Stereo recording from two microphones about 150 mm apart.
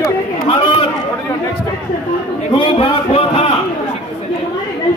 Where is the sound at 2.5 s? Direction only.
35° left (ahead or behind).